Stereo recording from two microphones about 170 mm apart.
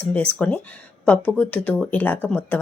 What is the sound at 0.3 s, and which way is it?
Speech, 5° left (ahead or behind).